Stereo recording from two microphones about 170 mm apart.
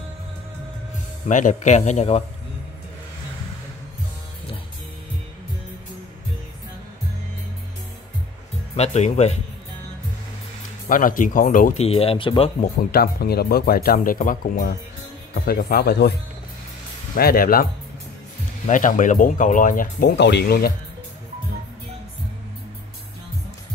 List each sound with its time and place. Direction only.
1.3 s speech: 45° left (ahead or behind)
8.7 s speech: 40° left (ahead or behind)
10.9 s speech: 50° left (ahead or behind)
11.8 s speech: 35° left (ahead or behind)
12.9 s speech: 65° left (ahead or behind)
17.1 s speech: 60° left (ahead or behind)
18.7 s speech: 50° left (ahead or behind)
20.1 s speech: 80° left